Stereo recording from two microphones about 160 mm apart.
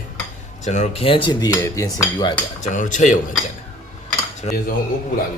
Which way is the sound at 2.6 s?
50° left (ahead or behind).